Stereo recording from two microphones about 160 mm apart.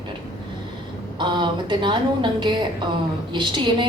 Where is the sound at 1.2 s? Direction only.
30° right (ahead or behind).